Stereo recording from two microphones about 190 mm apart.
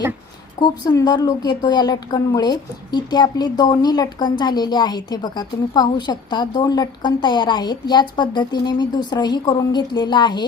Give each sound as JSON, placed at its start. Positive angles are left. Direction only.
{"t": 0.6, "sound": "a woman's voice", "side_deg": 20}